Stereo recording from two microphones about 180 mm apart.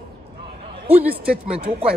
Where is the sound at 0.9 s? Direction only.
10° right (ahead or behind).